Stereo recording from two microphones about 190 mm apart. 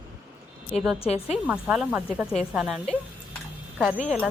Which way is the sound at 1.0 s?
30° left (ahead or behind).